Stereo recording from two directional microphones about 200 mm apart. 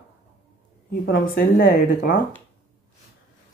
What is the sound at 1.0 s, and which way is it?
Speech, 45° left (ahead or behind).